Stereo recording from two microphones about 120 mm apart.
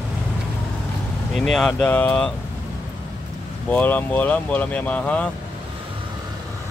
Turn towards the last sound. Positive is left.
turn(degrees=10)  # may be behind; listen again after turning